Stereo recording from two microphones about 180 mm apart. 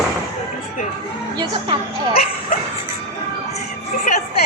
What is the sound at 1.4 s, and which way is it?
Speech, 25° right (ahead or behind).